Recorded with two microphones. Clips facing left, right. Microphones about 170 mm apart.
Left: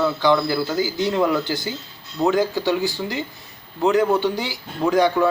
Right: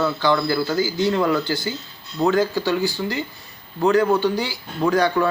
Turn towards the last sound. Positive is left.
turn(degrees=20)  # may be behind; listen again after turning